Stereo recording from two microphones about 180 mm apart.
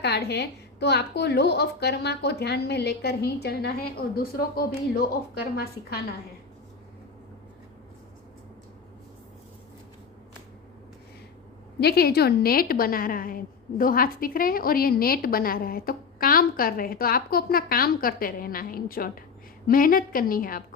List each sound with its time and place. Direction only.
0.0 s a woman's voice: 65° left (ahead or behind)
11.8 s a woman's voice: 60° left (ahead or behind)